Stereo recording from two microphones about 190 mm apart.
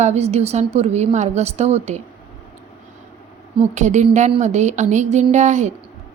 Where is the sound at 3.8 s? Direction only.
40° right (ahead or behind).